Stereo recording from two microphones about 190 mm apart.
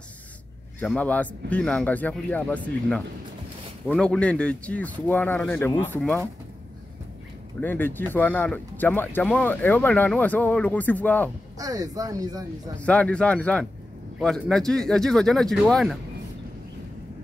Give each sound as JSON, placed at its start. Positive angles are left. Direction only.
{"t": 0.7, "sound": "speech", "side_deg": 10}
{"t": 7.6, "sound": "speech", "side_deg": 10}
{"t": 11.5, "sound": "speech", "side_deg": -20}
{"t": 12.8, "sound": "speech", "side_deg": 5}